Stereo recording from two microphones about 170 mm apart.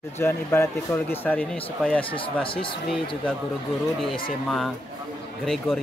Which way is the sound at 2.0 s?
30° left (ahead or behind).